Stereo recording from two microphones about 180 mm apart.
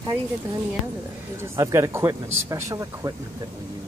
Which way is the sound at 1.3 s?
15° right (ahead or behind).